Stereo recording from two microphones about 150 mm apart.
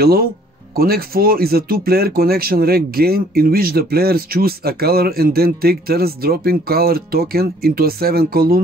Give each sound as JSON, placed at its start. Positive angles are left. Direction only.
{"t": 0.0, "sound": "speech", "side_deg": -90}